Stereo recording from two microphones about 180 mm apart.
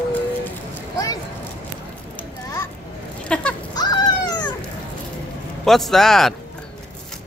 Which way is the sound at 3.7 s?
25° left (ahead or behind).